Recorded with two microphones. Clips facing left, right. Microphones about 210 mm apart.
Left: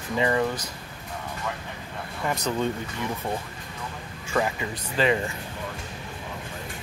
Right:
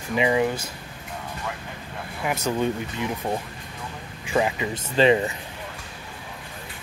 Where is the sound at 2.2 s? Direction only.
10° right (ahead or behind).